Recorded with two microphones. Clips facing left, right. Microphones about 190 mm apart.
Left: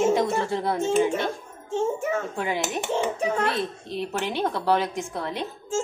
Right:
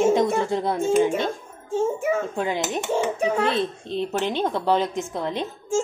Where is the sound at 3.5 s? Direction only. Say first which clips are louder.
Right 4 dB; 20° right (ahead or behind).